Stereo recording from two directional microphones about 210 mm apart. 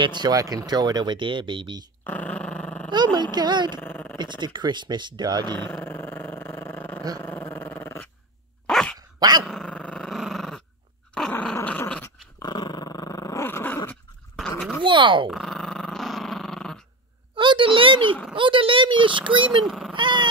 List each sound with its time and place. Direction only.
0.0 s speech: 20° right (ahead or behind)
2.0 s dog: 5° left (ahead or behind)
2.9 s speech: 20° right (ahead or behind)
3.8 s dog: 10° left (ahead or behind)
4.2 s speech: 20° right (ahead or behind)
5.5 s dog: 10° left (ahead or behind)
12.4 s dog: 20° left (ahead or behind)
14.8 s a sound: 20° right (ahead or behind)
15.2 s dog: centre (ahead or behind)
17.4 s a sound: 25° right (ahead or behind)
19.6 s cat: centre (ahead or behind)
19.9 s cat: 20° right (ahead or behind)